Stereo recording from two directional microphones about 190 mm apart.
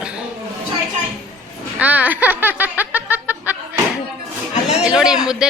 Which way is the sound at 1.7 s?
10° right (ahead or behind).